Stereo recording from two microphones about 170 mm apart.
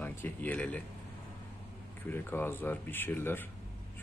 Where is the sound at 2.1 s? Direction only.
10° left (ahead or behind).